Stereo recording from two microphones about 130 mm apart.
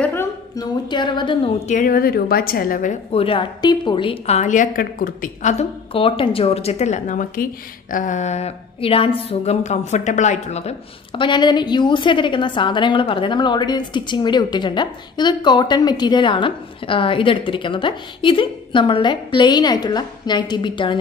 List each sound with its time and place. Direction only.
0.0 s a sound: 15° left (ahead or behind)
0.6 s a woman's voice: 35° left (ahead or behind)
1.7 s a woman's voice: 90° left
3.1 s a woman's voice: 45° left (ahead or behind); by 5.7 s 65° left (ahead or behind)
5.9 s a woman's voice: 45° left (ahead or behind)